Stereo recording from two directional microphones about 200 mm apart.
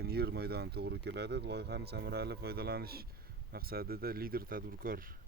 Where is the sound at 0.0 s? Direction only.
50° right (ahead or behind).